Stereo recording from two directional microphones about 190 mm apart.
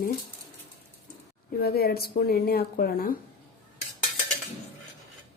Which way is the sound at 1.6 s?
55° left (ahead or behind).